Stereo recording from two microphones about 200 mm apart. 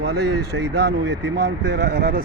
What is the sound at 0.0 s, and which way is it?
Speech, 55° right (ahead or behind).